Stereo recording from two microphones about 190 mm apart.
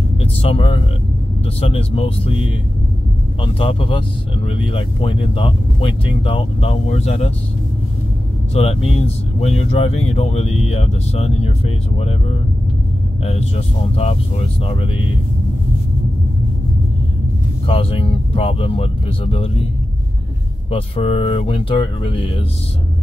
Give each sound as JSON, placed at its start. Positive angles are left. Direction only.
{"t": 0.2, "sound": "speech", "side_deg": 30}
{"t": 3.3, "sound": "speech", "side_deg": 30}
{"t": 8.5, "sound": "speech", "side_deg": 30}
{"t": 13.2, "sound": "speech", "side_deg": 35}
{"t": 14.6, "sound": "speech", "side_deg": 30}
{"t": 17.6, "sound": "speech", "side_deg": 30}
{"t": 20.7, "sound": "speech", "side_deg": 30}